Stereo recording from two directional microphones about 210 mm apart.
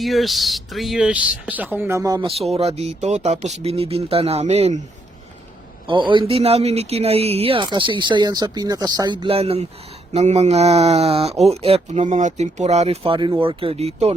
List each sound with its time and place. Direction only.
0.0 s speech: centre (ahead or behind); by 2.3 s 15° right (ahead or behind)
2.5 s speech: 30° right (ahead or behind)
5.9 s speech: 25° right (ahead or behind)